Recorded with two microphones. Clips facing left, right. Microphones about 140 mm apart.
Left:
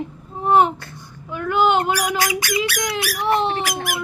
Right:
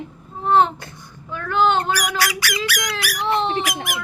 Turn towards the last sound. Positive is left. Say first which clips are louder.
# left 1 dB
turn(degrees=35)  # may be behind; listen again after turning